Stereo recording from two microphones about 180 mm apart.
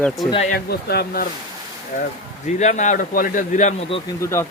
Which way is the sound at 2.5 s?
40° left (ahead or behind).